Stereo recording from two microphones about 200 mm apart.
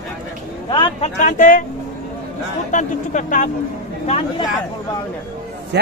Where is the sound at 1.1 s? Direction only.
40° left (ahead or behind).